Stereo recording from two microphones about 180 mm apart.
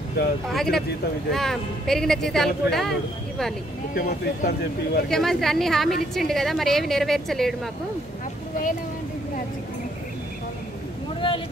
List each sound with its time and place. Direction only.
0.5 s speech: centre (ahead or behind)
3.9 s speech: 55° left (ahead or behind)
5.1 s speech: centre (ahead or behind)
11.1 s a sound: 30° left (ahead or behind)